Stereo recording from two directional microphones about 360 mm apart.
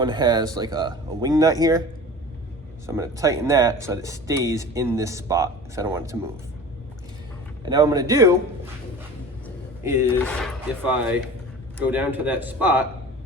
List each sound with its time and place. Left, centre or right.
0.0 s speech: centre
2.8 s speech: centre
7.6 s speech: centre
10.2 s speech: centre